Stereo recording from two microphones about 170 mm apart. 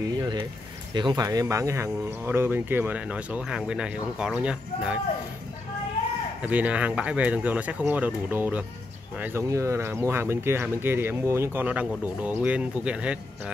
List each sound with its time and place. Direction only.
0.0 s speech: 25° right (ahead or behind); by 4.9 s 5° right (ahead or behind)
6.4 s speech: 10° right (ahead or behind)